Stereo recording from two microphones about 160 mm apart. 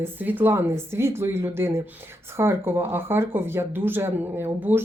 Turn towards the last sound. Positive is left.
turn(degrees=-15)  # may be behind; listen again after turning